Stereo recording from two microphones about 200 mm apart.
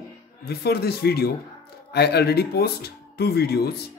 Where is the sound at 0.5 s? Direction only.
55° left (ahead or behind).